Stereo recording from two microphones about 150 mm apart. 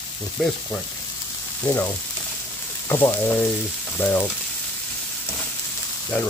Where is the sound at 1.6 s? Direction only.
20° left (ahead or behind).